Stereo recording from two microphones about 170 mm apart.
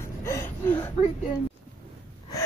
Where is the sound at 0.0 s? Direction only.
15° left (ahead or behind).